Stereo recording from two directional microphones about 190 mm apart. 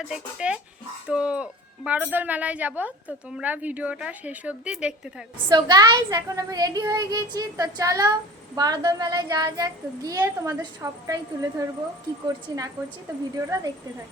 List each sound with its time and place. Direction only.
0.1 s a woman's voice: 5° right (ahead or behind)
5.5 s a woman's voice: 20° right (ahead or behind)